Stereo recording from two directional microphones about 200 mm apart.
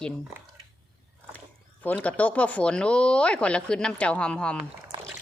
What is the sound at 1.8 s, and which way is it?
A woman's voice, 10° left (ahead or behind).